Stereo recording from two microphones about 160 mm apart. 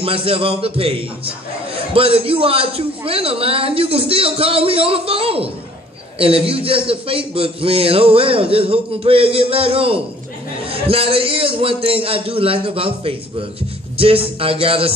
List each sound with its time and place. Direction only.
0.0 s a man's voice: 35° right (ahead or behind)